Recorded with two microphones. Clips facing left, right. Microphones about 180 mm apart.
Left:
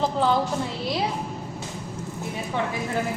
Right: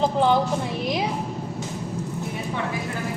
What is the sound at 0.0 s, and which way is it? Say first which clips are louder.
Speech: right 3 dB; 20° right (ahead or behind).